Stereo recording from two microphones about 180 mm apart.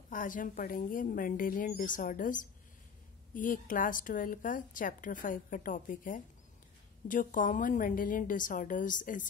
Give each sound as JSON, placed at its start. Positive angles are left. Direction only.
{"t": 0.1, "sound": "a woman's voice", "side_deg": 45}